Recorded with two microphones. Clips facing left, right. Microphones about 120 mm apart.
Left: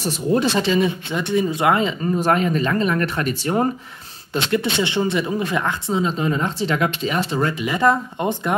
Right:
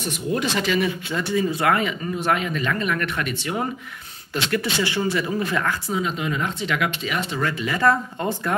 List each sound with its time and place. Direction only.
0.0 s speech: 35° left (ahead or behind)
2.1 s speech: 40° left (ahead or behind)
4.3 s speech: 25° left (ahead or behind)
7.5 s speech: 20° left (ahead or behind)